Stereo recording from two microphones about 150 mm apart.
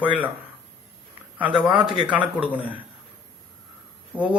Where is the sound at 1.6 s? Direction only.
5° right (ahead or behind).